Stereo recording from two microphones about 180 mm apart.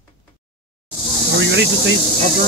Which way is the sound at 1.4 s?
85° right.